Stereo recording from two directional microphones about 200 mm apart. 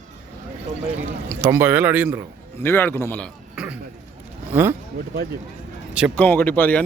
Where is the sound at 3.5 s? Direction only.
5° right (ahead or behind).